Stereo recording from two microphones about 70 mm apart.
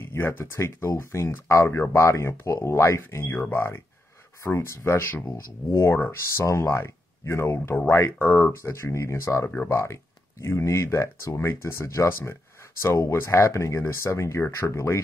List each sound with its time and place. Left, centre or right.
0.0 s speech: left
3.3 s speech: left
4.4 s speech: left